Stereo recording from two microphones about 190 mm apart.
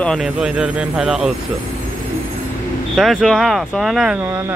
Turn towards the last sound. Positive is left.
turn(degrees=-15)  # may be behind; listen again after turning